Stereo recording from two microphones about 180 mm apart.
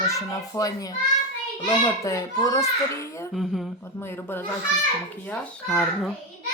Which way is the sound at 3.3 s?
Centre (ahead or behind).